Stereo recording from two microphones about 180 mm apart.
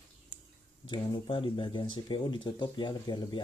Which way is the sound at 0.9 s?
25° left (ahead or behind).